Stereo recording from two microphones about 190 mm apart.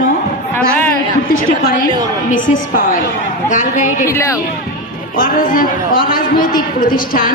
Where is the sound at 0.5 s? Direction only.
10° left (ahead or behind).